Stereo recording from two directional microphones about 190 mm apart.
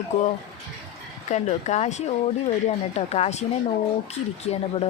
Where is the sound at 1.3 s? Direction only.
35° left (ahead or behind).